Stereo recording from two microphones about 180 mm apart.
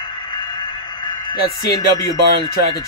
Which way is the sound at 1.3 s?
25° left (ahead or behind).